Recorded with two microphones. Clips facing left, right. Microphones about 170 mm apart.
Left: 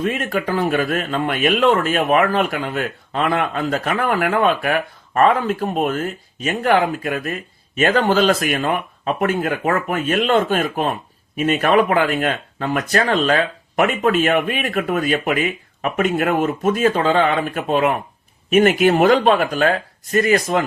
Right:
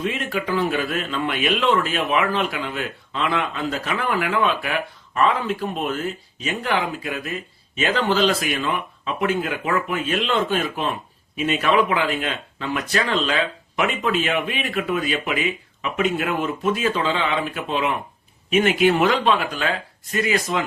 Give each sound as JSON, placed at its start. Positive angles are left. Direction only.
{"t": 0.0, "sound": "speech", "side_deg": 45}